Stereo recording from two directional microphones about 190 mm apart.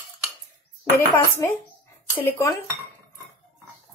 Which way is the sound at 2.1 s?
10° left (ahead or behind).